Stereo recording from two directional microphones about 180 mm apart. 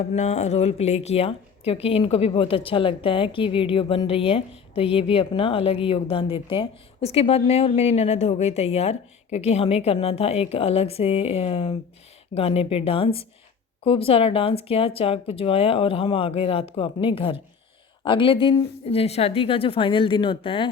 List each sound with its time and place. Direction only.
0.0 s a woman's voice: 40° left (ahead or behind)